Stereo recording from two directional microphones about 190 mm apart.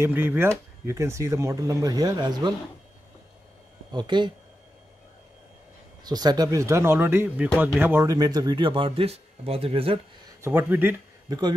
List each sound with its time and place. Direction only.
0.0 s speech: 10° right (ahead or behind)
3.9 s a man's voice: 25° right (ahead or behind)
6.0 s a man's voice: 20° right (ahead or behind)
10.4 s speech: 10° right (ahead or behind)